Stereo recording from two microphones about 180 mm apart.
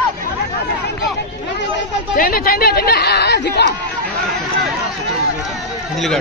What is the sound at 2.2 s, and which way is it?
Speech, 55° left (ahead or behind).